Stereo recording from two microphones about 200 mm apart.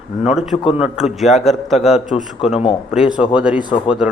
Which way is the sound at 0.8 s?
Centre (ahead or behind).